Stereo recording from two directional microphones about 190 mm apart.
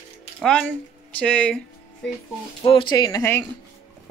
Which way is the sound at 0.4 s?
5° left (ahead or behind).